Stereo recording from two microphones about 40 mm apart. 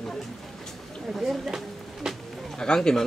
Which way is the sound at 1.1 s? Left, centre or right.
Centre.